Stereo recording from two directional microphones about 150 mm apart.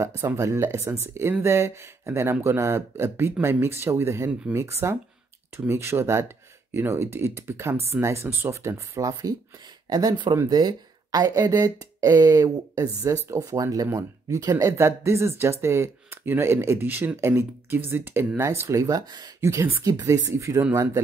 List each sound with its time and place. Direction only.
0.0 s speech: 15° right (ahead or behind)